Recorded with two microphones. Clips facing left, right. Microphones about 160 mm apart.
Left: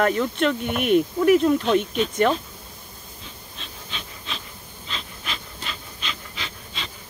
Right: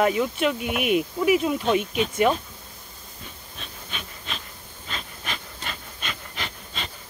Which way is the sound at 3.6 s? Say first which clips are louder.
Even; 50° right (ahead or behind).